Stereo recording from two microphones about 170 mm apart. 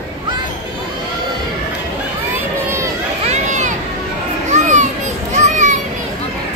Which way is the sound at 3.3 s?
45° right (ahead or behind).